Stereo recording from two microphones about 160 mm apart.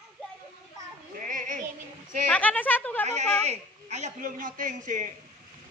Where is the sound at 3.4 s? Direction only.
45° right (ahead or behind).